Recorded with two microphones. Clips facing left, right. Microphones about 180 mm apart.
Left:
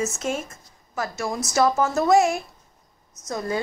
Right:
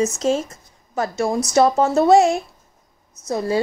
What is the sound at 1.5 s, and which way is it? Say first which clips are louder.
A woman's voice: right 4 dB; 30° right (ahead or behind).